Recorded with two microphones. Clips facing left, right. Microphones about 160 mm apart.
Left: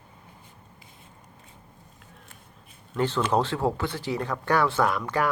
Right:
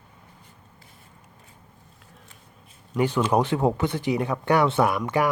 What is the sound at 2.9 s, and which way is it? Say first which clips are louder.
Speech: right 3 dB; 15° right (ahead or behind).